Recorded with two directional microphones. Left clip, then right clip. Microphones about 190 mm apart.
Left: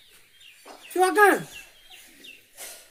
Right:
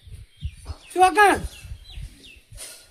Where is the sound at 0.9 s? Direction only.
30° right (ahead or behind).